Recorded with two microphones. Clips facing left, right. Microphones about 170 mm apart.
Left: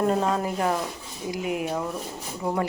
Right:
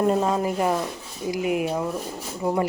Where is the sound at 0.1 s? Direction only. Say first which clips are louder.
Right 2 dB; 10° right (ahead or behind).